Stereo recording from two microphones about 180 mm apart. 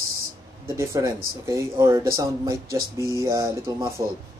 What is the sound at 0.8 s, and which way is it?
Speech, 15° right (ahead or behind).